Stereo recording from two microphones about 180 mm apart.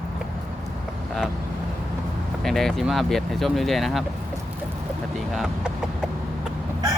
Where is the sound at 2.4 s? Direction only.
Centre (ahead or behind).